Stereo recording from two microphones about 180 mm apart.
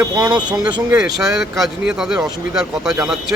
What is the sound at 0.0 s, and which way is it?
Speech, 25° right (ahead or behind).